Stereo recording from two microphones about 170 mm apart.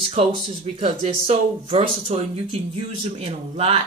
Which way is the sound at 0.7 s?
40° right (ahead or behind).